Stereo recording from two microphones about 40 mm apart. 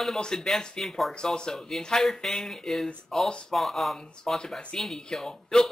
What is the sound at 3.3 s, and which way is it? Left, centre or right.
Speech, left.